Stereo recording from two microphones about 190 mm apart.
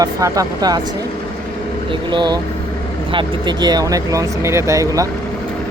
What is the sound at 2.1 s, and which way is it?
Speech, 25° right (ahead or behind).